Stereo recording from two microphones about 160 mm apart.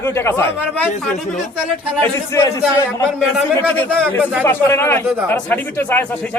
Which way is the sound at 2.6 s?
5° right (ahead or behind).